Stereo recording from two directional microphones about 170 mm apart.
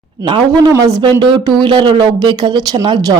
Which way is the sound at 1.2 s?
30° right (ahead or behind).